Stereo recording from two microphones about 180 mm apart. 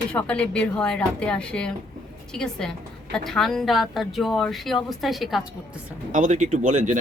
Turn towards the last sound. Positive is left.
turn(degrees=-45)  # may be behind; listen again after turning